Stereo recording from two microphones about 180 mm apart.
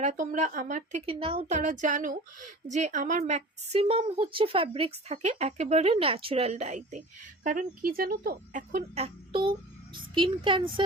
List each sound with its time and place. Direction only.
0.0 s speech: 45° right (ahead or behind)
1.2 s speech: 30° right (ahead or behind)
1.5 s a woman's voice: 45° right (ahead or behind)
9.9 s speech: 25° right (ahead or behind)